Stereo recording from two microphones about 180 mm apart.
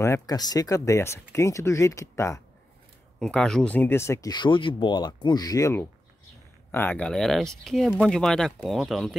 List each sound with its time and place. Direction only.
0.0 s speech: 20° left (ahead or behind)
3.2 s speech: 5° left (ahead or behind)